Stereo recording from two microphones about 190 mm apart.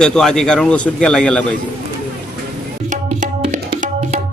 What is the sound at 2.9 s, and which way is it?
Tabla, 40° right (ahead or behind).